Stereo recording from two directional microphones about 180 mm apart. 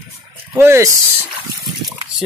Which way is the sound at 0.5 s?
15° right (ahead or behind).